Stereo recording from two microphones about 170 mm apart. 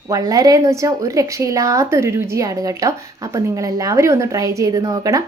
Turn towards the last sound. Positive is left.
turn(degrees=-20)  # may be behind; listen again after turning